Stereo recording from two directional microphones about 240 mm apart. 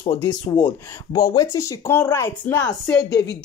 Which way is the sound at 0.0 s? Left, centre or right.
Centre.